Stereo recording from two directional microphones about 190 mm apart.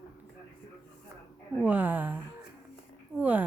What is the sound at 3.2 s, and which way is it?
Speech, 10° right (ahead or behind).